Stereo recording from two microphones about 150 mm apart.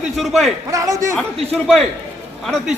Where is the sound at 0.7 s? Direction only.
20° right (ahead or behind).